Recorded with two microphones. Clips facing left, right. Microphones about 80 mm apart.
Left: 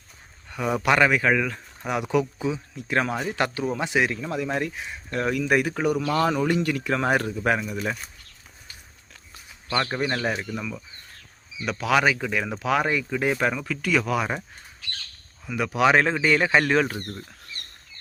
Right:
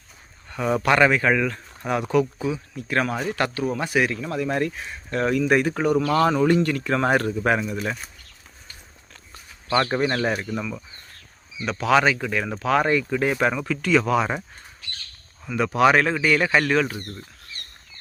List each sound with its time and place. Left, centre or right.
0.5 s speech: centre
9.7 s speech: centre
13.3 s speech: centre
15.5 s speech: centre
16.0 s speech: centre